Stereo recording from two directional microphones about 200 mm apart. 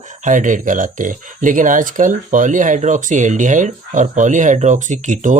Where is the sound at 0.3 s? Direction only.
40° right (ahead or behind).